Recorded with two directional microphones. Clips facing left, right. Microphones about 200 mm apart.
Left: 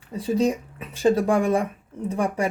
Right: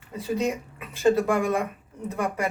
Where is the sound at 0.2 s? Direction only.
30° left (ahead or behind).